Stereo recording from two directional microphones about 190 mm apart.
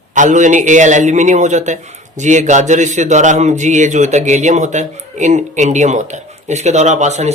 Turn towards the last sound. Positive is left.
turn(degrees=-35)  # may be behind; listen again after turning